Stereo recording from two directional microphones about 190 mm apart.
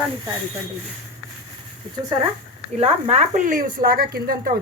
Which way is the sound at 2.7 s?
35° right (ahead or behind).